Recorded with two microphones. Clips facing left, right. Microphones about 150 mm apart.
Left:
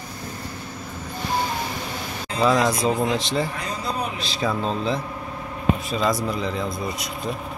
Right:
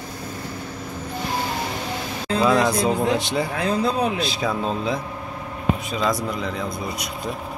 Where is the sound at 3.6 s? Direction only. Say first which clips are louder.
Right 7 dB; 60° right (ahead or behind).